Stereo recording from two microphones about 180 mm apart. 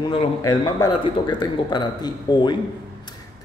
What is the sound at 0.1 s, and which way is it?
A man's voice, 25° left (ahead or behind).